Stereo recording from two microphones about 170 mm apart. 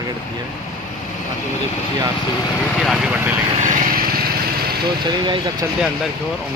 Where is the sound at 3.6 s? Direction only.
50° right (ahead or behind); by 4.9 s 65° right (ahead or behind).